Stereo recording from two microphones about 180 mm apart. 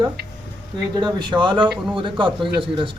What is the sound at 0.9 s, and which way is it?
A man's voice, 25° right (ahead or behind).